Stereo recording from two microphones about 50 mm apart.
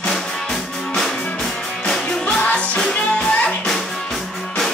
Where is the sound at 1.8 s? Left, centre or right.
Centre.